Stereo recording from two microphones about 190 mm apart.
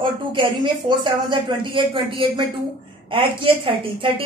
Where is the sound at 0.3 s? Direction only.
25° right (ahead or behind).